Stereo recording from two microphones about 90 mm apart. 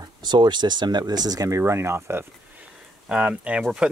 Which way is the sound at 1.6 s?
30° right (ahead or behind).